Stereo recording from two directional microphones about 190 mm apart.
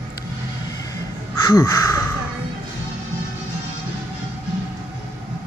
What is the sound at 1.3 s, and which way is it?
Crow, 15° left (ahead or behind).